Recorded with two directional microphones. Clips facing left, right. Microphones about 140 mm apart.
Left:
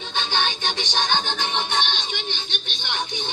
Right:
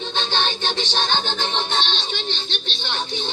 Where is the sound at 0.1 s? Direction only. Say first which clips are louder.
Even; 10° left (ahead or behind).